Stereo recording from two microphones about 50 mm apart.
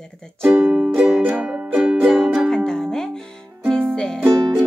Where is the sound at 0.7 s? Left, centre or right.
Right.